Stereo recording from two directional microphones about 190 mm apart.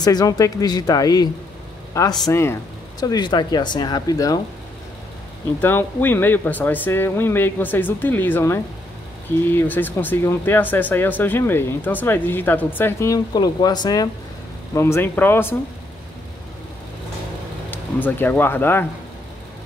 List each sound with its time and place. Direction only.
0.0 s speech: 20° left (ahead or behind)
5.6 s speech: 10° left (ahead or behind)
17.6 s speech: 10° left (ahead or behind)